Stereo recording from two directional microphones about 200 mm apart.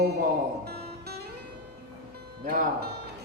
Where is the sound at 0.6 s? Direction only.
55° right (ahead or behind).